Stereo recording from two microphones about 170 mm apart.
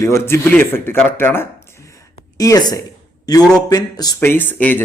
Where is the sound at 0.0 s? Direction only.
15° left (ahead or behind).